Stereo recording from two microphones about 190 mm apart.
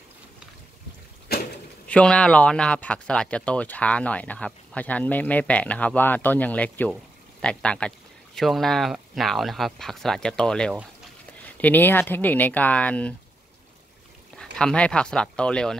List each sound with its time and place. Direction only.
1.3 s a sound: 55° left (ahead or behind)
1.9 s speech: 5° left (ahead or behind)
14.4 s speech: 5° left (ahead or behind)